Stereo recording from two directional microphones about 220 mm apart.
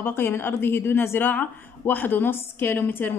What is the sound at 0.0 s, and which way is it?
A woman's voice, 10° left (ahead or behind).